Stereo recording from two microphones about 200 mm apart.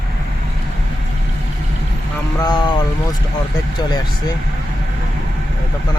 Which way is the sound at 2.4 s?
20° left (ahead or behind).